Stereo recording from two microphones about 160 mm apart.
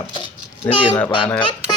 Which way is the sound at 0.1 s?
30° left (ahead or behind).